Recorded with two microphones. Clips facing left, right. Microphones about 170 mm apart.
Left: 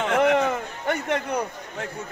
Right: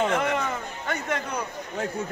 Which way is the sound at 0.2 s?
65° left (ahead or behind).